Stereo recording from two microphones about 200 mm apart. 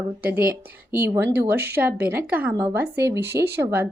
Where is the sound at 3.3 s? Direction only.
55° right (ahead or behind).